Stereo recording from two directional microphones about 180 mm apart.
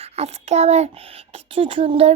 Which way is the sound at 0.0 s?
35° right (ahead or behind).